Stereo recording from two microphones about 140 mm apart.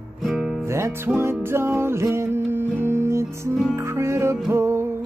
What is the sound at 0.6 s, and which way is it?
Music, 20° right (ahead or behind).